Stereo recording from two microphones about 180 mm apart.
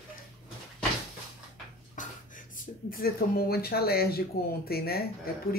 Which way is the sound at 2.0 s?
50° left (ahead or behind).